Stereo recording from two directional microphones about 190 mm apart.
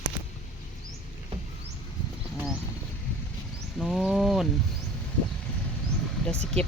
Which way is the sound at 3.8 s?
Centre (ahead or behind).